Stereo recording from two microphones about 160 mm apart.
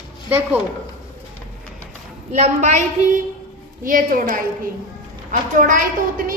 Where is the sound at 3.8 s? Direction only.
60° right (ahead or behind).